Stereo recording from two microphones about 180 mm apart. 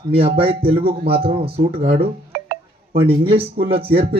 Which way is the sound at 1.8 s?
60° right (ahead or behind).